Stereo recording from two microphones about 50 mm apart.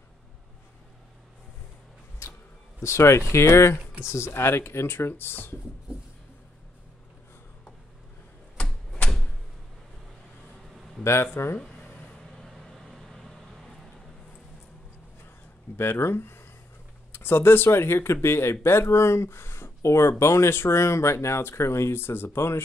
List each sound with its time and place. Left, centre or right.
2.8 s speech: left
10.7 s a sound: centre
11.4 s speech: left
12.1 s vehicle: centre
15.7 s speech: left
21.4 s speech: left
21.9 s speech: left